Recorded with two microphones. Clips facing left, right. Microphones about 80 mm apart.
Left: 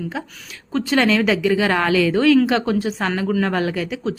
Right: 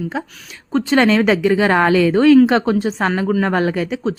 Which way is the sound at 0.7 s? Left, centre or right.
Right.